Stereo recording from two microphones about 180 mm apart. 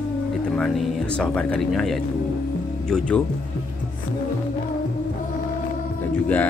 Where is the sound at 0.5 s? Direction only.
5° left (ahead or behind).